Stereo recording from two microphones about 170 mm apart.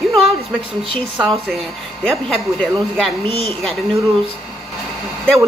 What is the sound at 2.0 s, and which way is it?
Speech, 5° left (ahead or behind).